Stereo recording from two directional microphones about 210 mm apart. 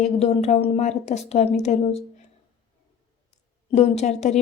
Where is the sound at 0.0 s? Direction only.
30° left (ahead or behind).